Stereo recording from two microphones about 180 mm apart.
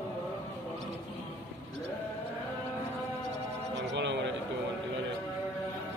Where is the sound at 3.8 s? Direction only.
75° right (ahead or behind).